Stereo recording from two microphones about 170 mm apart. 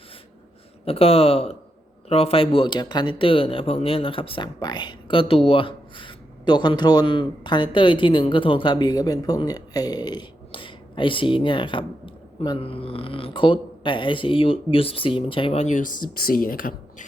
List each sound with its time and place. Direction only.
0.9 s speech: 35° left (ahead or behind); by 17.1 s 55° left (ahead or behind)